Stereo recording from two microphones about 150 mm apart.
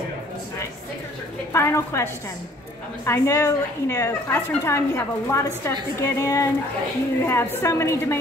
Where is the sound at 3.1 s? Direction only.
20° left (ahead or behind).